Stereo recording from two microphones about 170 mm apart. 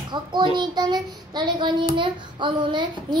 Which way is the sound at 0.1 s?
25° right (ahead or behind).